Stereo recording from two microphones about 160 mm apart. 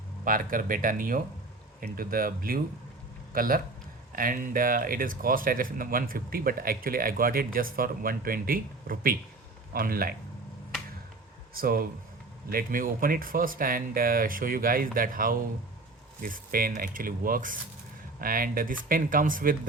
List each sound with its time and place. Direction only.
0.3 s speech: 60° right (ahead or behind)
11.5 s speech: 65° right (ahead or behind)